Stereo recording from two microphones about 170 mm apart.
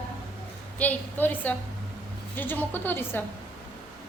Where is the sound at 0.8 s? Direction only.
10° left (ahead or behind).